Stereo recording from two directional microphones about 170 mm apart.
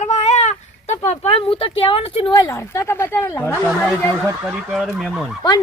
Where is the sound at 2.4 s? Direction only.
15° left (ahead or behind).